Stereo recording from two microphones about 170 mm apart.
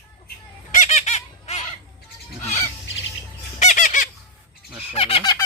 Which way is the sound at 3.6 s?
45° left (ahead or behind).